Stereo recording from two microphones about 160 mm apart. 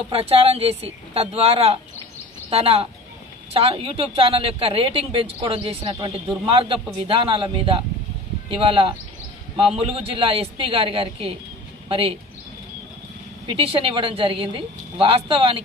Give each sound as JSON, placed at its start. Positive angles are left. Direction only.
{"t": 0.1, "sound": "speech", "side_deg": -35}
{"t": 13.6, "sound": "speech", "side_deg": -35}